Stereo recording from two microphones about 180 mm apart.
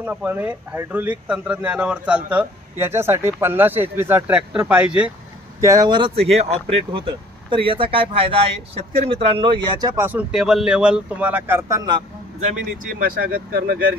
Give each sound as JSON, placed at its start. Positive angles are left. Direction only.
{"t": 0.0, "sound": "speech", "side_deg": -10}
{"t": 5.6, "sound": "speech", "side_deg": -20}
{"t": 12.5, "sound": "speech", "side_deg": -50}